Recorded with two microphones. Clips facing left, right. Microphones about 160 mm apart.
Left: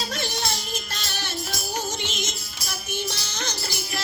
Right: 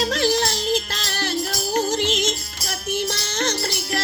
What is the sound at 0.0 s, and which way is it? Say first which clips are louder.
Music: right 9 dB; 90° right.